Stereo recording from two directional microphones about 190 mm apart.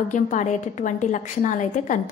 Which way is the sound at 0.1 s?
40° left (ahead or behind).